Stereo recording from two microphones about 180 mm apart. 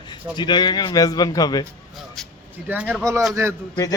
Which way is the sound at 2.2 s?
Centre (ahead or behind).